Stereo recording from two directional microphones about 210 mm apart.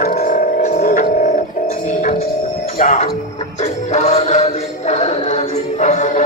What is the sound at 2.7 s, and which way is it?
Speech, 35° left (ahead or behind).